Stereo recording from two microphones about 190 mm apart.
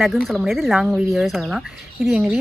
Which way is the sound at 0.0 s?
Centre (ahead or behind).